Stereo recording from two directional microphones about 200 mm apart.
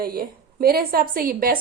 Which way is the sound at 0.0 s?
50° right (ahead or behind).